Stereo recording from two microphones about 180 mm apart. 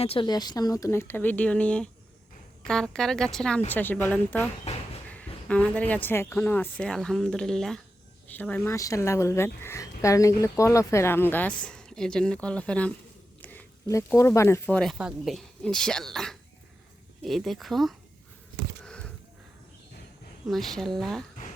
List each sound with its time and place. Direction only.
0.0 s speech: 30° left (ahead or behind); by 4.4 s 10° left (ahead or behind)
4.7 s a sound: 35° left (ahead or behind)
5.0 s speech: 10° left (ahead or behind)
14.8 s speech: centre (ahead or behind)
18.8 s a sound: 5° left (ahead or behind)
20.5 s speech: centre (ahead or behind)